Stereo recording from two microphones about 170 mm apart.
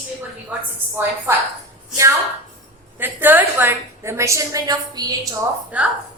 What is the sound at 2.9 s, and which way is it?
A woman's voice, 10° right (ahead or behind).